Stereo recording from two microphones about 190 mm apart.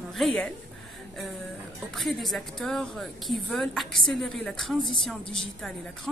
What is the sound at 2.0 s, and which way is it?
Speech, centre (ahead or behind).